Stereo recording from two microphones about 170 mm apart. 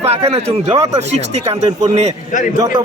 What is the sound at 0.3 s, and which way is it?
Speech, 35° right (ahead or behind).